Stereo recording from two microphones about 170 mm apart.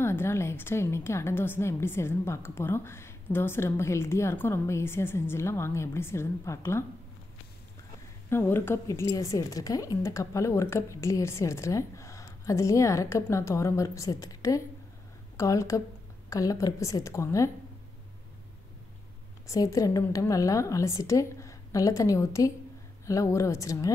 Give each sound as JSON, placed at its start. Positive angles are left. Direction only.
{"t": 0.0, "sound": "a woman's voice", "side_deg": 15}
{"t": 8.3, "sound": "a woman's voice", "side_deg": 15}
{"t": 19.4, "sound": "a woman's voice", "side_deg": 20}